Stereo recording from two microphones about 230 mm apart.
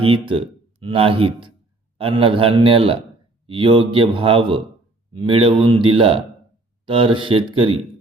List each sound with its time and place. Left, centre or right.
0.0 s a man's voice: right